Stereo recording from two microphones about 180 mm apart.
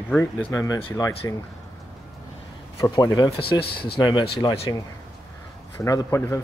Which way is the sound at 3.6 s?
60° left (ahead or behind).